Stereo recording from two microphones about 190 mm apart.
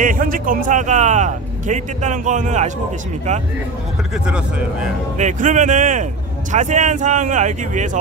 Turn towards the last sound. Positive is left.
turn(degrees=-40)  # may be behind; listen again after turning